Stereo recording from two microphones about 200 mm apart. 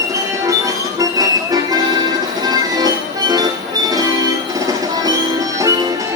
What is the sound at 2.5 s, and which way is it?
Music, 20° right (ahead or behind).